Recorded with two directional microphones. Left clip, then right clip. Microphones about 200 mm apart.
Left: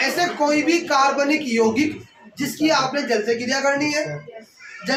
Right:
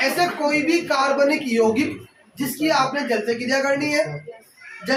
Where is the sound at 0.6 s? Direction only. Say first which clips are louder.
Left 2 dB; 20° left (ahead or behind).